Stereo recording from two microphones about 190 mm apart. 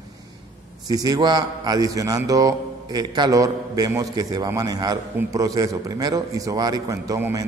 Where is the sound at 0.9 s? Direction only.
20° right (ahead or behind).